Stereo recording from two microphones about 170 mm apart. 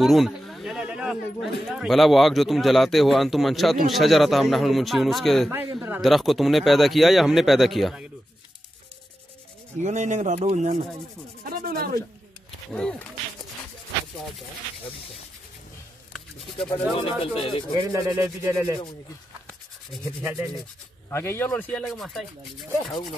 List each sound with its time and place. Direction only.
0.0 s speech: centre (ahead or behind)
5.8 s rub: 10° right (ahead or behind)
6.0 s speech: centre (ahead or behind)
9.8 s speech: 45° right (ahead or behind)
11.4 s speech: 60° right (ahead or behind)
12.4 s wild animals: 5° left (ahead or behind)
16.9 s rub: 35° left (ahead or behind)
17.7 s rub: 20° right (ahead or behind)
21.1 s speech: 15° left (ahead or behind)